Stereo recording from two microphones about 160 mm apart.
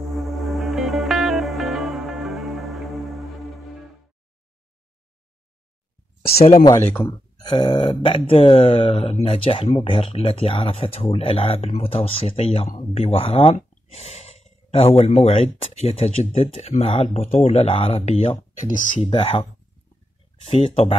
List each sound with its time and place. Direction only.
0.0 s music: centre (ahead or behind)
6.3 s speech: 40° left (ahead or behind)
6.8 s speech: 10° left (ahead or behind)
7.1 s speech: 25° left (ahead or behind)
20.4 s speech: 40° left (ahead or behind)